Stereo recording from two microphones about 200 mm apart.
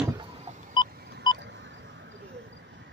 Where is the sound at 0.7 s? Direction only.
20° left (ahead or behind).